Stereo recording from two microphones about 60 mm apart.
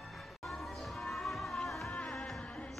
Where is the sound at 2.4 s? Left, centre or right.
Centre.